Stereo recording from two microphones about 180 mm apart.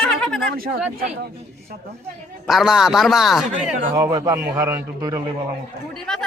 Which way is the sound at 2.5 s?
Centre (ahead or behind).